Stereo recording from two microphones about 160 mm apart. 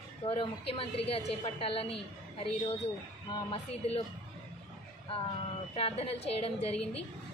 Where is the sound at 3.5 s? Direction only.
35° left (ahead or behind).